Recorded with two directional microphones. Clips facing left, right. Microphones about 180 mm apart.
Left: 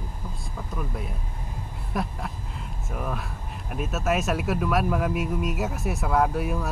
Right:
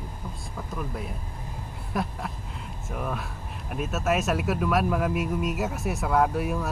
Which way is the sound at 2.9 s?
Centre (ahead or behind).